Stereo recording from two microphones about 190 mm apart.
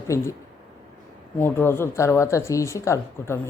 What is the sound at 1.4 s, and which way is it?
Speech, 10° left (ahead or behind).